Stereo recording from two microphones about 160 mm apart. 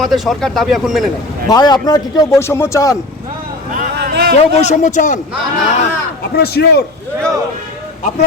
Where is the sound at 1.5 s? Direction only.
25° left (ahead or behind).